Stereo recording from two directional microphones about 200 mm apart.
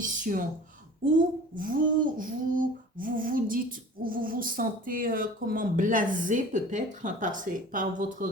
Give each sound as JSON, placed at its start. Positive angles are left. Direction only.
{"t": 0.0, "sound": "speech", "side_deg": -40}
{"t": 1.5, "sound": "female singing", "side_deg": -45}